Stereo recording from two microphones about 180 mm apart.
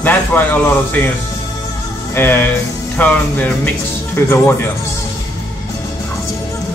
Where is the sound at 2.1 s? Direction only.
10° left (ahead or behind).